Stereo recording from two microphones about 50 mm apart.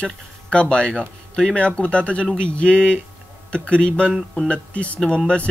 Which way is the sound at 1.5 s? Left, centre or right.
Left.